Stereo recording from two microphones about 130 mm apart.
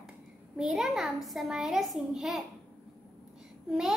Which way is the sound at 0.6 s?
Centre (ahead or behind).